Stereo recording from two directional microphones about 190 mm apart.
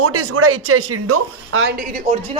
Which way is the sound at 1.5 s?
80° right.